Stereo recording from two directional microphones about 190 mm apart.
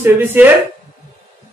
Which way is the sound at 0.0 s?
10° right (ahead or behind).